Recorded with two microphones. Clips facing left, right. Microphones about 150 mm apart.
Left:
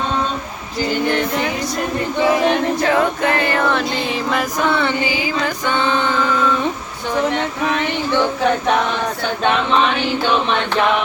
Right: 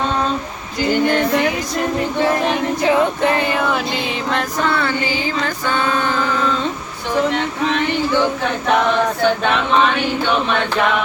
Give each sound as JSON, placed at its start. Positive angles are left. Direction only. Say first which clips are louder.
{"t": 2.8, "sound": "female singing", "louder": "right 4 dB", "side_deg": -20}
{"t": 3.7, "sound": "music", "louder": "left 1 dB", "side_deg": -5}
{"t": 4.7, "sound": "music", "louder": "left 1 dB", "side_deg": 20}